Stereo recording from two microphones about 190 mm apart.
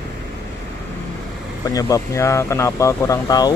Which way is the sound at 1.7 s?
15° left (ahead or behind).